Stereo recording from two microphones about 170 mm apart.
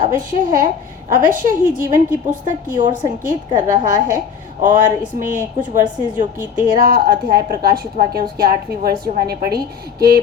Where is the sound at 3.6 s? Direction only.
45° right (ahead or behind).